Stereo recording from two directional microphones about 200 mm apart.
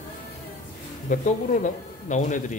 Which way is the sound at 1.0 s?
40° left (ahead or behind).